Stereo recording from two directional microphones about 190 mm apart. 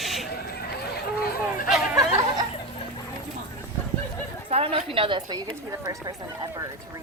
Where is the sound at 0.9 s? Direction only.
55° left (ahead or behind).